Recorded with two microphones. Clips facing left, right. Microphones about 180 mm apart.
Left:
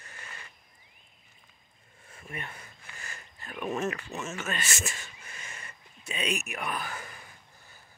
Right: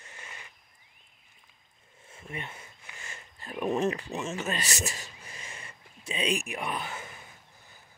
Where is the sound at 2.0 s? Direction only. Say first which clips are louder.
Right 1 dB; 25° right (ahead or behind).